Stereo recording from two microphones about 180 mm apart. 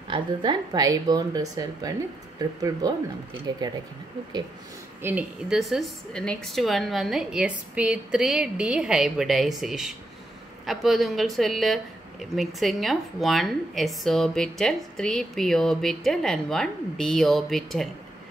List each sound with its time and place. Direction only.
0.1 s a woman's voice: 25° right (ahead or behind)
3.5 s a woman's voice: 25° right (ahead or behind)
5.0 s speech: 5° right (ahead or behind)